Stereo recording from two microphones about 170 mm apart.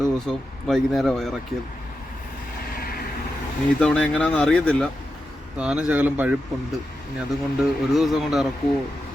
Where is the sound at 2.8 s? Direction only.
60° left (ahead or behind).